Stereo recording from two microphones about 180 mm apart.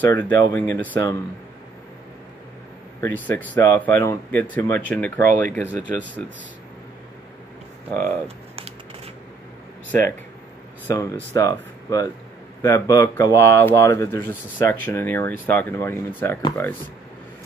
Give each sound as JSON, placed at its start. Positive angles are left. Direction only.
{"t": 0.0, "sound": "speech", "side_deg": 10}
{"t": 3.0, "sound": "speech", "side_deg": 10}
{"t": 5.2, "sound": "speech", "side_deg": -50}
{"t": 5.7, "sound": "speech", "side_deg": -10}
{"t": 7.9, "sound": "speech", "side_deg": 15}
{"t": 8.5, "sound": "typing", "side_deg": -35}
{"t": 10.9, "sound": "speech", "side_deg": 15}